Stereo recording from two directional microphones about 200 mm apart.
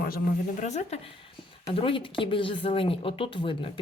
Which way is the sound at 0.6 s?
35° left (ahead or behind).